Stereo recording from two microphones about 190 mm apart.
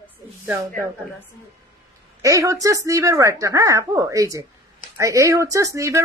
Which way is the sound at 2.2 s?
15° right (ahead or behind).